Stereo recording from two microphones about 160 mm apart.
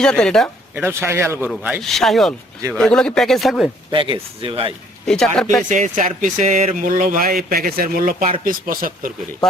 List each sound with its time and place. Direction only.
0.0 s speech: 5° left (ahead or behind)
0.8 s speech: 15° right (ahead or behind)
1.8 s speech: centre (ahead or behind)
3.9 s speech: 30° right (ahead or behind)
5.0 s speech: 5° left (ahead or behind)
5.6 s speech: 50° right (ahead or behind)
6.8 s speech: 55° right (ahead or behind)